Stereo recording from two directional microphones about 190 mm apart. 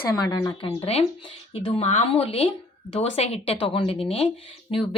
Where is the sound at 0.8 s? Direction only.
30° left (ahead or behind).